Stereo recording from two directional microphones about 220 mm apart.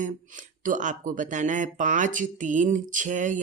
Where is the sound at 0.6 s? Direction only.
35° right (ahead or behind).